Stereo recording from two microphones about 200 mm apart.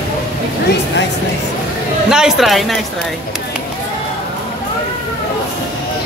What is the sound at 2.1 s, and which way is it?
Speech, 5° right (ahead or behind).